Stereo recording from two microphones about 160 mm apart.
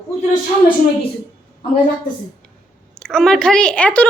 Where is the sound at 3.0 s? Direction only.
5° left (ahead or behind).